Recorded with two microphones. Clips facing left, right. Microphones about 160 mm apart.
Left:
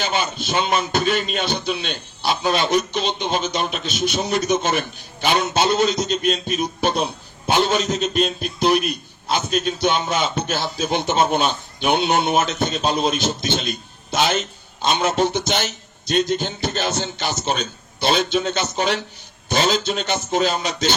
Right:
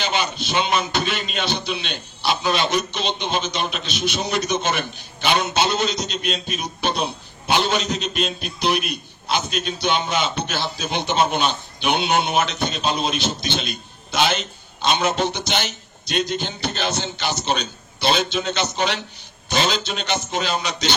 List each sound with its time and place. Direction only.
0.0 s a man's voice: 45° left (ahead or behind)
0.5 s a man's voice: 35° left (ahead or behind)